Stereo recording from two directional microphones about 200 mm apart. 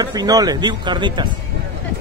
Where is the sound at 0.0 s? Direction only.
20° right (ahead or behind).